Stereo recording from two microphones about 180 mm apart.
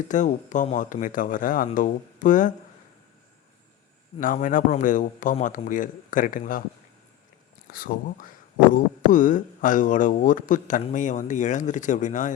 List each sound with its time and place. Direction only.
0.1 s speech: 45° left (ahead or behind)
4.2 s speech: 45° left (ahead or behind)
7.7 s speech: 50° left (ahead or behind)